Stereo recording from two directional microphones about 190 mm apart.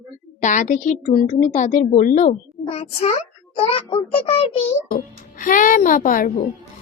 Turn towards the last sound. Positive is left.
turn(degrees=45)  # may be behind; listen again after turning